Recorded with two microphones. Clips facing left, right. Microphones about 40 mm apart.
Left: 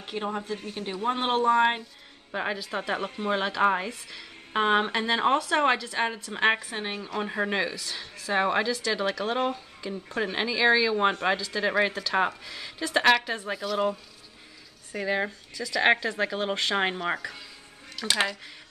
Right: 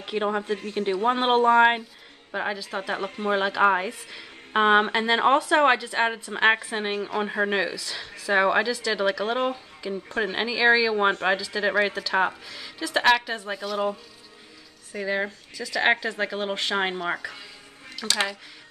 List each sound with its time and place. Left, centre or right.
0.1 s speech: right
2.3 s speech: centre
2.9 s speech: centre